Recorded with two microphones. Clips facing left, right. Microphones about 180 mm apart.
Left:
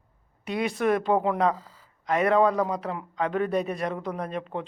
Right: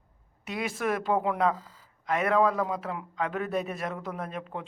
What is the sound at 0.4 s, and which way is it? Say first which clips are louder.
Speech: left 5 dB; centre (ahead or behind).